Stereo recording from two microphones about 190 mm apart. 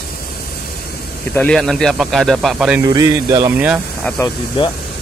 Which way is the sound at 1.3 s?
5° left (ahead or behind).